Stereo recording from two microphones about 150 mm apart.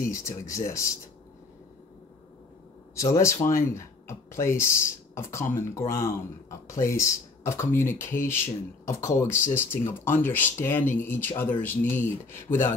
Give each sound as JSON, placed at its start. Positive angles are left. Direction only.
{"t": 0.1, "sound": "speech", "side_deg": 20}
{"t": 2.9, "sound": "speech", "side_deg": 20}